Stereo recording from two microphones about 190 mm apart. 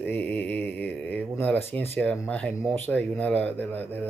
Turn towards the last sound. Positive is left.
turn(degrees=10)  # may be behind; listen again after turning